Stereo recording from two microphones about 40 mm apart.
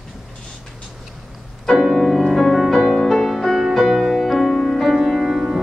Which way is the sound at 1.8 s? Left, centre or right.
Centre.